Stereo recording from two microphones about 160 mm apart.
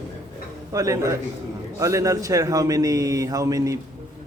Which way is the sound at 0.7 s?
20° right (ahead or behind).